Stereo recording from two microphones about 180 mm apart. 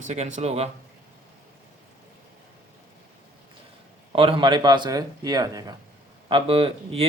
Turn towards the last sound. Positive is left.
turn(degrees=-30)  # may be behind; listen again after turning